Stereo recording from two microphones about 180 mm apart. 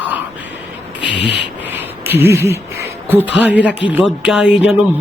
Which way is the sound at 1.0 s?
90° left.